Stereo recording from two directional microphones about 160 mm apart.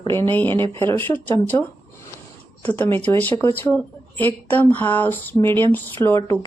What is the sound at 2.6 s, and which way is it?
Speech, 10° left (ahead or behind).